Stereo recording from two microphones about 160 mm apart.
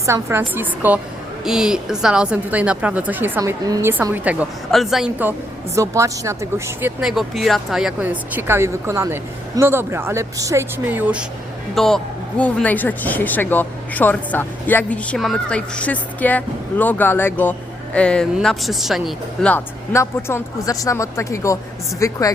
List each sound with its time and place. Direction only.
0.0 s speech: 15° right (ahead or behind)
5.7 s speech: 20° right (ahead or behind)
7.0 s speech: centre (ahead or behind)
11.7 s a woman's voice: centre (ahead or behind); by 22.2 s 20° left (ahead or behind)